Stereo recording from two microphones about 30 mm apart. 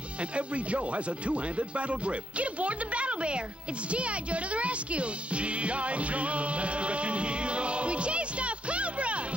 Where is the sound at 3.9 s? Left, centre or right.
Right.